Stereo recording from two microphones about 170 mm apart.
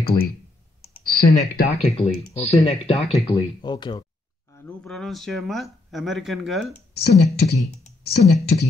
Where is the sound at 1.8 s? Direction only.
35° left (ahead or behind).